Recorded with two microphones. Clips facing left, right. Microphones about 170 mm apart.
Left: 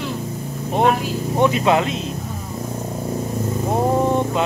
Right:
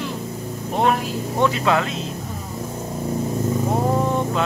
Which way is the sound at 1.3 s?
20° left (ahead or behind).